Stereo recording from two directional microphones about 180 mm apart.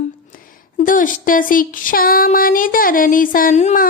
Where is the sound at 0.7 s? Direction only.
50° left (ahead or behind).